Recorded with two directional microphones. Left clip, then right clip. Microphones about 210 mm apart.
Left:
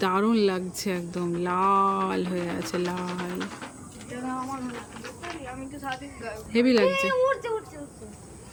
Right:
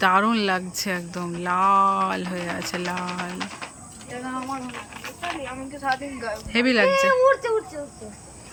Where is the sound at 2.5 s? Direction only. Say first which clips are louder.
Right 2 dB; 10° right (ahead or behind).